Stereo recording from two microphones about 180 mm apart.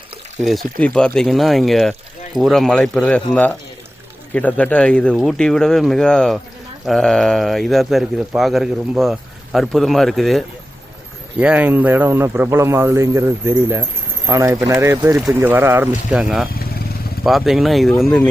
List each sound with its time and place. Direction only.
0.4 s speech: centre (ahead or behind)